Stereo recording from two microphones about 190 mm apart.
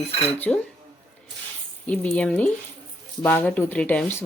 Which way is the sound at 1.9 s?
10° left (ahead or behind).